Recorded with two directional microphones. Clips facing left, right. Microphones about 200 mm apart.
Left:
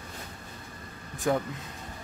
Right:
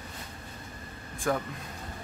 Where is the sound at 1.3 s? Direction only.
20° left (ahead or behind).